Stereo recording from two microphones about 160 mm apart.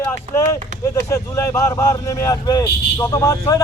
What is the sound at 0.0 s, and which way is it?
Speech, 15° left (ahead or behind).